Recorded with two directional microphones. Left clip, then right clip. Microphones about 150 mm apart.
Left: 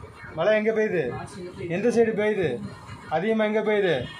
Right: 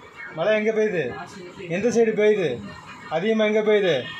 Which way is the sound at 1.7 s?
35° right (ahead or behind).